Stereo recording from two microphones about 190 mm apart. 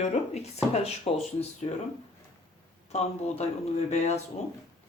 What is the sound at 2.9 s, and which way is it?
Speech, 35° left (ahead or behind).